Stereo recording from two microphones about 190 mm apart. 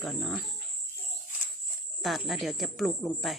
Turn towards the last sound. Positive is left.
turn(degrees=0)  # may be behind; listen again after turning